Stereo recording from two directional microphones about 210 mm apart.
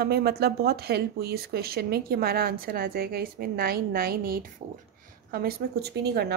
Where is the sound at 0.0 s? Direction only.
50° right (ahead or behind).